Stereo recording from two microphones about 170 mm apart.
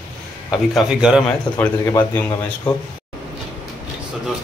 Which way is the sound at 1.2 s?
10° left (ahead or behind).